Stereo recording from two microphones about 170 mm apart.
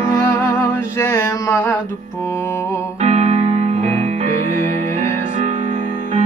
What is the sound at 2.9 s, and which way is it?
Music, 40° right (ahead or behind).